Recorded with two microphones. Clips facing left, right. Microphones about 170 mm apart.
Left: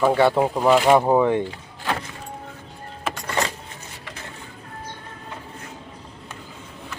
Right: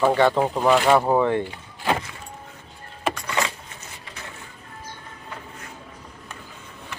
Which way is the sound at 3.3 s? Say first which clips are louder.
Left 4 dB; 40° left (ahead or behind).